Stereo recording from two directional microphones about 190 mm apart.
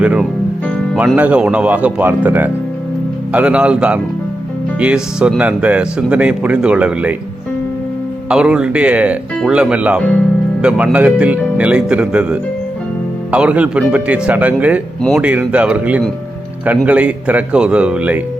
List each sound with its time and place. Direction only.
0.0 s speech: 5° right (ahead or behind)
8.3 s speech: 5° right (ahead or behind)